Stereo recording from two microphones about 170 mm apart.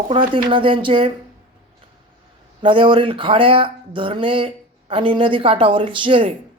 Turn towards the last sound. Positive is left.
turn(degrees=-30)  # may be behind; listen again after turning